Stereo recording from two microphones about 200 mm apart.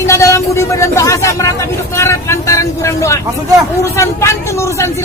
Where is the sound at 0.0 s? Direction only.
15° left (ahead or behind).